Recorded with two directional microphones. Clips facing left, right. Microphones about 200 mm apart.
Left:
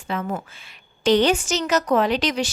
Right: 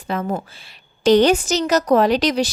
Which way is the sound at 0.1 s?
40° right (ahead or behind).